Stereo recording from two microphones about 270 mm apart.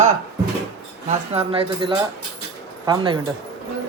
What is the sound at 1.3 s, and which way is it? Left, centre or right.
Speech, centre.